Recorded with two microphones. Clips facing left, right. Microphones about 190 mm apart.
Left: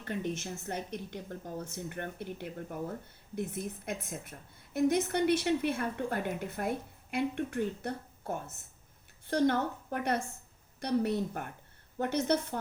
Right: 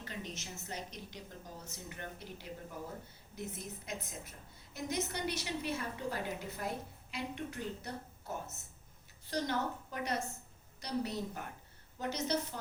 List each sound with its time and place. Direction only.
0.0 s a woman's voice: 55° left (ahead or behind)